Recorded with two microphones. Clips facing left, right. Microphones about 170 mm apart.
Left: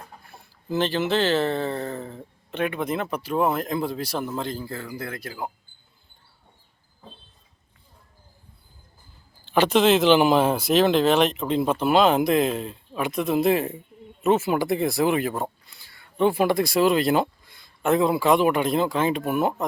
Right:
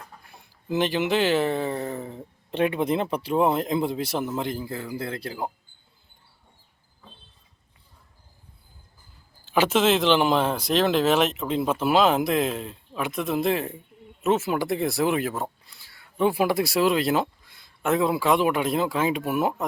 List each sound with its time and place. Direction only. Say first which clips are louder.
0.7 s speech: even; 15° right (ahead or behind)
2.5 s speech: right 3 dB; 30° right (ahead or behind)
9.4 s speech: left 2 dB; 5° right (ahead or behind)